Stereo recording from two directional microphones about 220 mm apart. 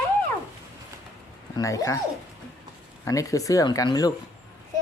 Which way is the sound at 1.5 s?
15° left (ahead or behind).